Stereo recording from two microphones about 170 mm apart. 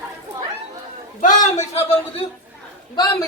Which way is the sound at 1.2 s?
50° left (ahead or behind).